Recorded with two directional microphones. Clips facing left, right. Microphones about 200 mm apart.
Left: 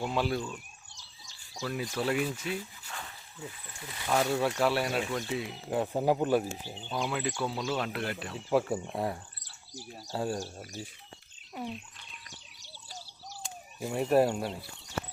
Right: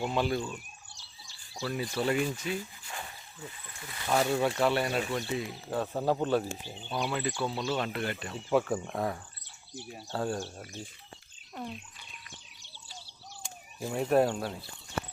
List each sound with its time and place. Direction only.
0.0 s speech: centre (ahead or behind)
1.6 s speech: centre (ahead or behind)
4.0 s speech: 5° right (ahead or behind)
5.7 s speech: 15° left (ahead or behind)
12.3 s bird: 40° left (ahead or behind)
13.4 s speech: 5° left (ahead or behind)